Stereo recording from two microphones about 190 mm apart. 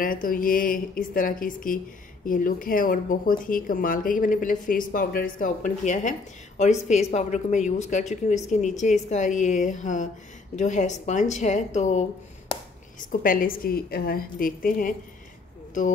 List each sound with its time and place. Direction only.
0.0 s a woman's voice: 45° left (ahead or behind)
13.1 s speech: 45° left (ahead or behind)